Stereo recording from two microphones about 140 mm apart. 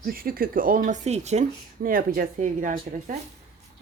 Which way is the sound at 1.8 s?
90° right.